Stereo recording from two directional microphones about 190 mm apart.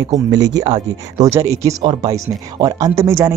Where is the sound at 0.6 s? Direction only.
20° right (ahead or behind).